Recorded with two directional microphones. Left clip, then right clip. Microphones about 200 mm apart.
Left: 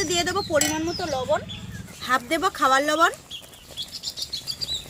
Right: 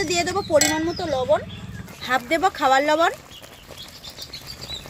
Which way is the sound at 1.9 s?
Centre (ahead or behind).